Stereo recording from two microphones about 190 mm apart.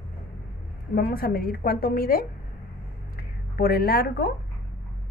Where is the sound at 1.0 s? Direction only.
50° left (ahead or behind).